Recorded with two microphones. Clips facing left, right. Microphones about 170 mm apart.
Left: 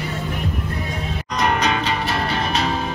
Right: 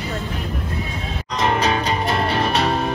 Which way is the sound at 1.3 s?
25° right (ahead or behind).